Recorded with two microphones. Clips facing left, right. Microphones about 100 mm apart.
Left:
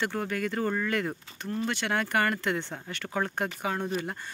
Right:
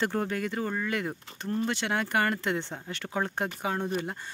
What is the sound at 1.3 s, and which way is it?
Speech, 30° right (ahead or behind).